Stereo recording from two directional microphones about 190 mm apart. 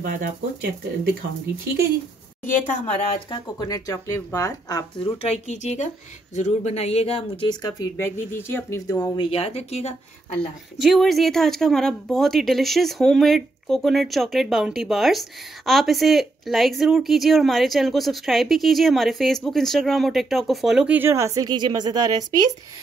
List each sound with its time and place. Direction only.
0.0 s speech: 50° right (ahead or behind)
2.4 s a woman's voice: 40° left (ahead or behind)
3.3 s speech: 25° left (ahead or behind)
10.8 s speech: centre (ahead or behind); by 22.2 s 20° right (ahead or behind)